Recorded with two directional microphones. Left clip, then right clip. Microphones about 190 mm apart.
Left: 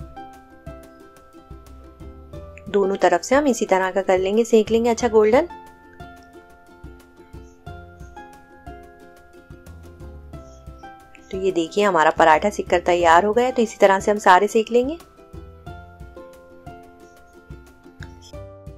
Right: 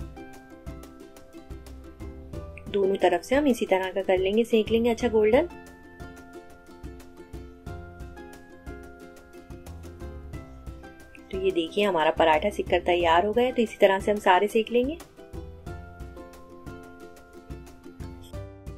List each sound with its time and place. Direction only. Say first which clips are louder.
2.9 s speech: left 6 dB; 20° left (ahead or behind)
11.2 s speech: left 4 dB; 20° left (ahead or behind)